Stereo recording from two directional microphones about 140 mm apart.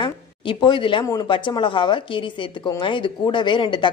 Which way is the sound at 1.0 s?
25° left (ahead or behind).